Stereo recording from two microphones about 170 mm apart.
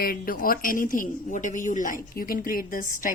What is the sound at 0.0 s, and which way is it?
Speech, 60° left (ahead or behind).